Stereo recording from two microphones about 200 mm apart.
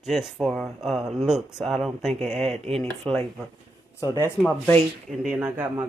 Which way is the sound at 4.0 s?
15° left (ahead or behind).